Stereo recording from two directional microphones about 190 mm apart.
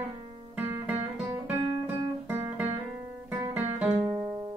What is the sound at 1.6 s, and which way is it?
Guitar, 25° right (ahead or behind).